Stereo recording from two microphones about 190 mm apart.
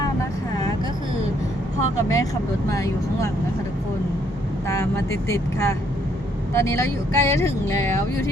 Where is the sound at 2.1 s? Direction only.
15° left (ahead or behind).